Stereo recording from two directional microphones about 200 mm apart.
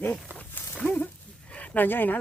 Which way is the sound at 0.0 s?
10° left (ahead or behind).